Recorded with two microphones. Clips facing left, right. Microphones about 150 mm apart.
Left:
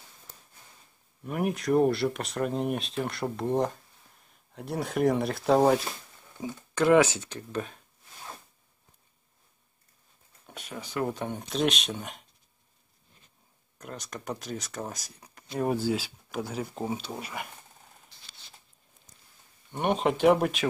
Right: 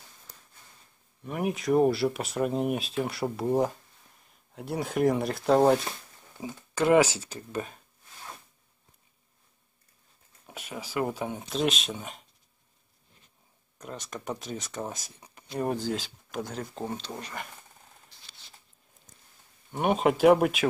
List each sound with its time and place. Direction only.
1.2 s speech: centre (ahead or behind)
7.0 s speech: 35° right (ahead or behind)
7.2 s speech: 5° right (ahead or behind)
10.4 s speech: 5° right (ahead or behind)
13.7 s speech: centre (ahead or behind)
19.7 s speech: 5° right (ahead or behind)